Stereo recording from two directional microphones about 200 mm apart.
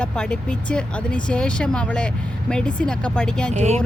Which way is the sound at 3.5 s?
35° right (ahead or behind).